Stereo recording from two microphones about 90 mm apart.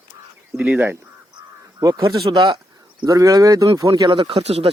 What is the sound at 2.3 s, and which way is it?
Speech, 55° right (ahead or behind).